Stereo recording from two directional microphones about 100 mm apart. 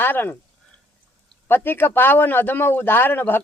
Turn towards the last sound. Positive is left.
turn(degrees=20)  # may be behind; listen again after turning